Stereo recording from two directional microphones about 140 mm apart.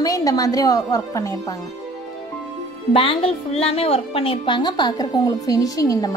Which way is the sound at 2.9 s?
40° left (ahead or behind).